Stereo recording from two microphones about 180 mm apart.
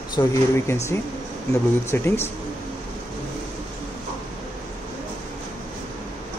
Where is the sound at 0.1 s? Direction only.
15° left (ahead or behind).